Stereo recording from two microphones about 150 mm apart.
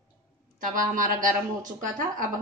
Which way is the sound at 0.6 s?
65° right (ahead or behind).